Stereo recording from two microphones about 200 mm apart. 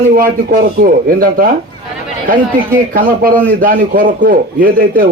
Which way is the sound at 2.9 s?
45° right (ahead or behind).